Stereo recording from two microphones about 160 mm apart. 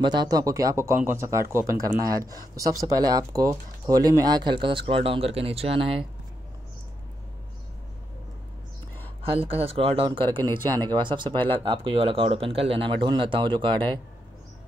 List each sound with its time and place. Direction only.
0.0 s speech: 25° right (ahead or behind)
9.2 s speech: 35° right (ahead or behind)